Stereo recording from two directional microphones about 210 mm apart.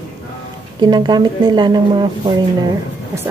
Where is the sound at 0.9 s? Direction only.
20° right (ahead or behind).